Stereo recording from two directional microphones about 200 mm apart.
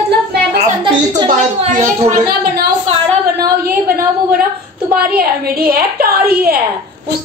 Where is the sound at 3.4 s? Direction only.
50° right (ahead or behind).